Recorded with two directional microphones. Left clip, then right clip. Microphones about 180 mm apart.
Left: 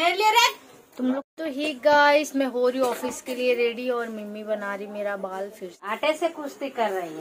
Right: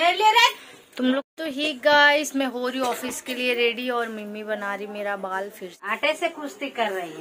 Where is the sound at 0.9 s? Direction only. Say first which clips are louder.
Right 3 dB; centre (ahead or behind).